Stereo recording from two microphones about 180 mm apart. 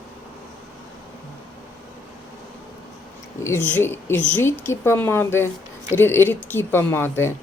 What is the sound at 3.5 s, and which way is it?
A woman's voice, 10° left (ahead or behind).